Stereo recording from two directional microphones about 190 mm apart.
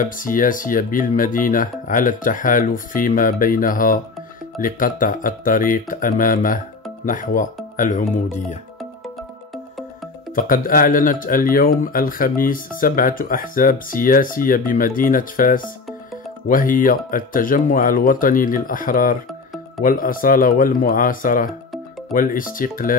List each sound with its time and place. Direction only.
0.0 s speech: 45° left (ahead or behind)
10.3 s speech: 45° left (ahead or behind)